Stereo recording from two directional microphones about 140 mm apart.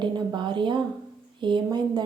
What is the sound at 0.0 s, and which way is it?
A woman's voice, 35° right (ahead or behind).